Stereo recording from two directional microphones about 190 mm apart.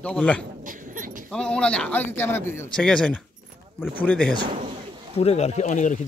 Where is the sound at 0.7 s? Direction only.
45° right (ahead or behind).